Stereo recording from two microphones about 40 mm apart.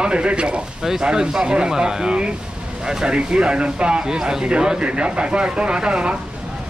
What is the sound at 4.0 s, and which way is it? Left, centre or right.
Speech, centre.